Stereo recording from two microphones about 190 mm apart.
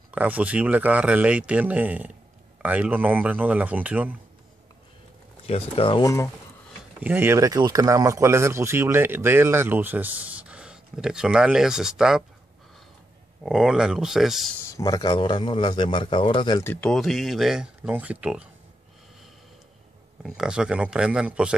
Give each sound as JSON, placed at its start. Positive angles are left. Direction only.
{"t": 0.1, "sound": "speech", "side_deg": -10}
{"t": 5.5, "sound": "a man's voice", "side_deg": 30}
{"t": 7.0, "sound": "speech", "side_deg": -10}
{"t": 13.4, "sound": "speech", "side_deg": -5}
{"t": 14.7, "sound": "a man's voice", "side_deg": 20}
{"t": 16.6, "sound": "speech", "side_deg": 5}
{"t": 20.2, "sound": "speech", "side_deg": -5}